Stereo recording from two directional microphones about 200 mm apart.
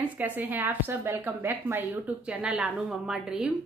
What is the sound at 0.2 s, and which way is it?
Speech, 10° right (ahead or behind).